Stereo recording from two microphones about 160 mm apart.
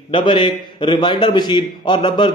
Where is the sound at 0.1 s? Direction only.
30° left (ahead or behind).